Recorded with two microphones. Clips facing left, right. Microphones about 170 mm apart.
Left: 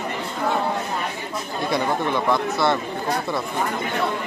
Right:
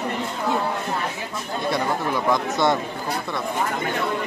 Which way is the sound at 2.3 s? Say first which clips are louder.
Right 1 dB; 15° right (ahead or behind).